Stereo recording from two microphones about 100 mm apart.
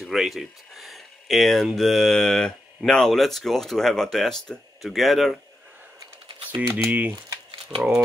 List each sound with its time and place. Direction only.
0.0 s speech: centre (ahead or behind)
6.5 s speech: 15° right (ahead or behind)